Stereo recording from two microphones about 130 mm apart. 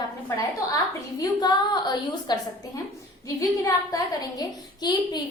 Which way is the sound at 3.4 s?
25° left (ahead or behind).